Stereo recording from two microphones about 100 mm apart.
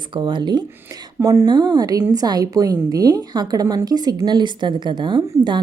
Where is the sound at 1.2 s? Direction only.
35° right (ahead or behind).